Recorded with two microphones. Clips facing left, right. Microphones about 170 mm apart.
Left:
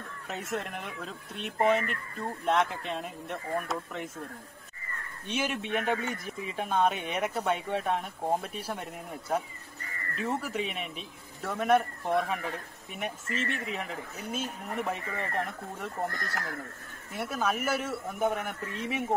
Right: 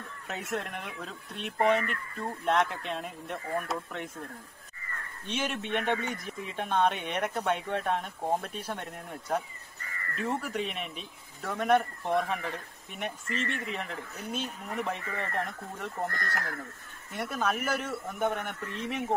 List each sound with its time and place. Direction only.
0.3 s speech: centre (ahead or behind)
5.2 s speech: 5° left (ahead or behind)
16.1 s speech: 55° right (ahead or behind)
17.1 s speech: 5° left (ahead or behind)